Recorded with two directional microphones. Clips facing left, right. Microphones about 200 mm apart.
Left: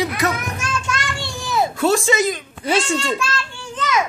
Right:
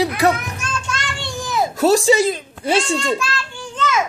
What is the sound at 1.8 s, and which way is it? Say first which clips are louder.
A woman's voice: right 5 dB; 35° right (ahead or behind).